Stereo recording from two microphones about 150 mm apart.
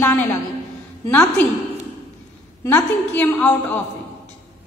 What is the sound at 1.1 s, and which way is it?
Speech, 15° left (ahead or behind).